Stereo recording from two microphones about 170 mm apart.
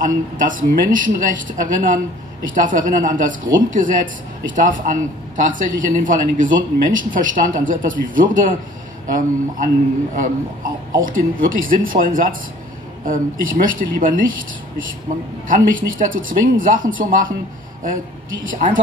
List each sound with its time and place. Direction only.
0.0 s speech: 50° right (ahead or behind)
11.0 s speech: 55° right (ahead or behind)
15.4 s speech: 50° right (ahead or behind)